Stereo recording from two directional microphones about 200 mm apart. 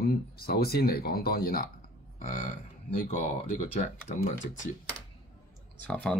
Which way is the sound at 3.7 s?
40° left (ahead or behind).